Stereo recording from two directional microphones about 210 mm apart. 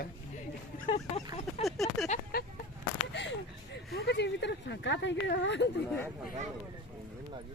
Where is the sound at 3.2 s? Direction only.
60° left (ahead or behind).